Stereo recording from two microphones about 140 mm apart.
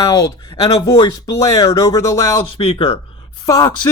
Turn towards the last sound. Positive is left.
turn(degrees=25)  # may be behind; listen again after turning